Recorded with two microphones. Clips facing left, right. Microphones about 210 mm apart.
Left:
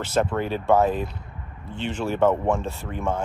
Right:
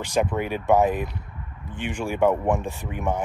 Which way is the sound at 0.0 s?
15° right (ahead or behind).